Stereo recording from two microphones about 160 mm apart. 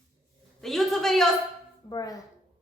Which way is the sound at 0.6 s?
Centre (ahead or behind).